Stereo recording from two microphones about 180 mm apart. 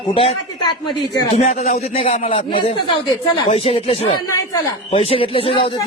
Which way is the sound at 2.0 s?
45° left (ahead or behind).